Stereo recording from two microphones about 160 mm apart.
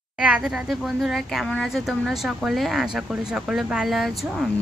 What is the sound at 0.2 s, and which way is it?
Speech, 5° right (ahead or behind).